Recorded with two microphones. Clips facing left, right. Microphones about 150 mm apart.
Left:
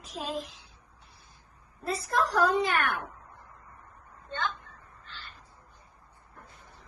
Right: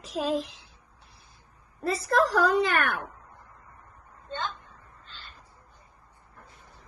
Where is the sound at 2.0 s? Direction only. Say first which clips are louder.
Right 3 dB; 80° right.